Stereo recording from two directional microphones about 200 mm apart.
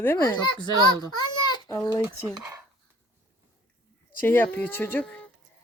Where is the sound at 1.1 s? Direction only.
20° left (ahead or behind).